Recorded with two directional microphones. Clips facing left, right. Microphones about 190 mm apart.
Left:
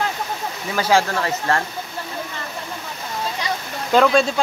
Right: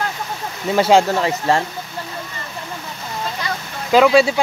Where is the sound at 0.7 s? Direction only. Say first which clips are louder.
Right 5 dB; 25° right (ahead or behind).